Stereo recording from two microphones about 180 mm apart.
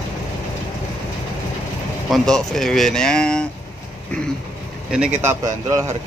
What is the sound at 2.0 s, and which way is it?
Speech, centre (ahead or behind).